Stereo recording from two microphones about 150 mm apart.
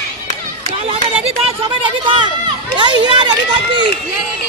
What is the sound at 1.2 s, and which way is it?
A woman's voice, 40° right (ahead or behind).